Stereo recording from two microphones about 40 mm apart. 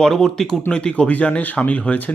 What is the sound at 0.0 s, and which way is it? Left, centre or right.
Speech, centre.